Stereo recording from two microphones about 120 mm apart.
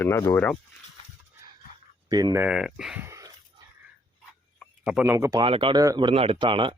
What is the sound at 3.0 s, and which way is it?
Dog, 25° right (ahead or behind).